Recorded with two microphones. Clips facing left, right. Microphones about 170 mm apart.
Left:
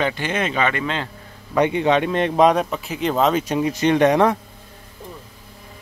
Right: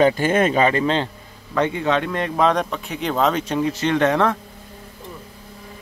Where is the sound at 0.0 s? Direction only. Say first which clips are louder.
Right 6 dB; 45° right (ahead or behind).